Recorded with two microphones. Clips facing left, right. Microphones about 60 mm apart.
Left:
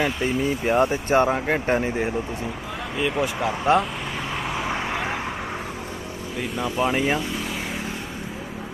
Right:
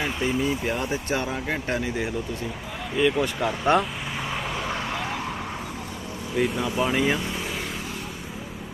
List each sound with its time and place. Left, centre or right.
0.2 s speech: left
3.0 s speech: centre
4.5 s vehicle: centre
4.9 s vehicle: left
6.7 s speech: centre